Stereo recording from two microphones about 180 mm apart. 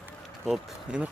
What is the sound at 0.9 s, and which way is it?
Speech, 5° right (ahead or behind).